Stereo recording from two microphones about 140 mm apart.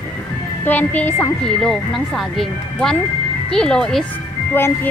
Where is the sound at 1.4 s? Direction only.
5° left (ahead or behind).